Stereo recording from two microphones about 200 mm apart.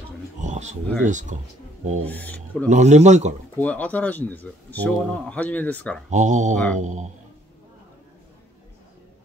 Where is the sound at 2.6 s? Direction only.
35° right (ahead or behind).